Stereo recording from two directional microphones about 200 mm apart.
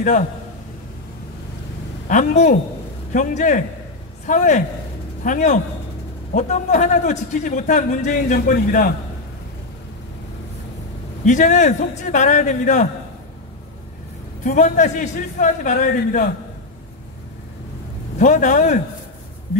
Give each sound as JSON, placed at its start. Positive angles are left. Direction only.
{"t": 2.0, "sound": "a man's voice", "side_deg": 40}
{"t": 11.2, "sound": "a man's voice", "side_deg": 40}
{"t": 14.4, "sound": "a man's voice", "side_deg": 40}
{"t": 18.2, "sound": "a man's voice", "side_deg": 40}